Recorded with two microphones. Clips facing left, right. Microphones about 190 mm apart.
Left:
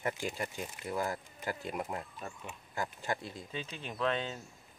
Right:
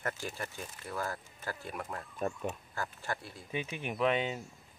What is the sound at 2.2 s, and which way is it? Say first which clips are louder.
Speech: right 10 dB; 45° right (ahead or behind).